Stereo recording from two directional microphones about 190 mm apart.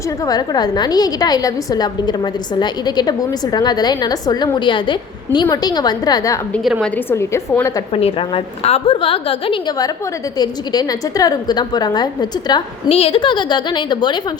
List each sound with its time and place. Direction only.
0.3 s a woman's voice: 20° left (ahead or behind)
8.6 s a woman's voice: 30° left (ahead or behind)